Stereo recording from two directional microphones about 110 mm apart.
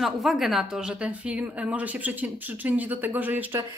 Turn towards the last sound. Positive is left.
turn(degrees=-15)  # may be behind; listen again after turning